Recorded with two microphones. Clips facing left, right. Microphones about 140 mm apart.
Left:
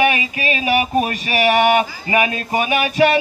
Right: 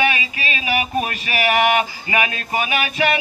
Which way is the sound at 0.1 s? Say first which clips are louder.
Left 4 dB; 45° left (ahead or behind).